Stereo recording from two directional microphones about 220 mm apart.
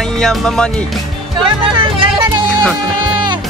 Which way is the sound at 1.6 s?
25° right (ahead or behind).